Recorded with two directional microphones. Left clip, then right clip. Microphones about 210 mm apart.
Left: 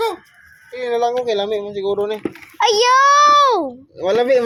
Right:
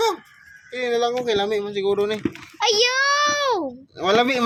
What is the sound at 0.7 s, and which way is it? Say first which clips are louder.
Speech: left 3 dB; 25° right (ahead or behind).